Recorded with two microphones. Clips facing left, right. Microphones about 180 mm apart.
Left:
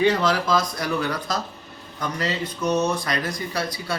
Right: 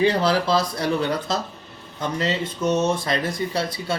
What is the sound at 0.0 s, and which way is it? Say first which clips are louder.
Speech: right 1 dB; 35° right (ahead or behind).